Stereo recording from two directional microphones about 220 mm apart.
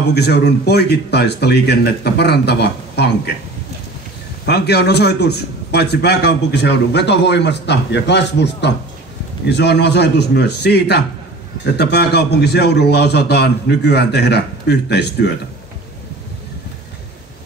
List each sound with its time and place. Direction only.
0.1 s a man's voice: 50° left (ahead or behind)
4.5 s a man's voice: 50° left (ahead or behind)